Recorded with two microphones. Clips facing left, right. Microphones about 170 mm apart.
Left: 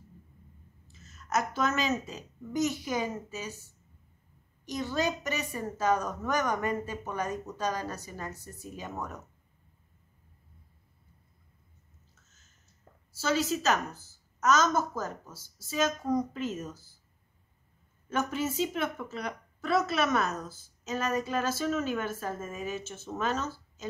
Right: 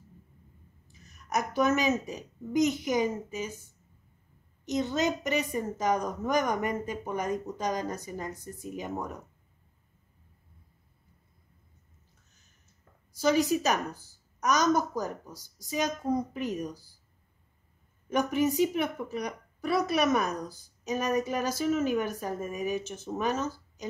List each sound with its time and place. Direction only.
0.8 s a woman's voice: 15° right (ahead or behind)
4.6 s a woman's voice: 20° right (ahead or behind)
13.2 s a woman's voice: 15° right (ahead or behind)
18.1 s a woman's voice: 15° right (ahead or behind)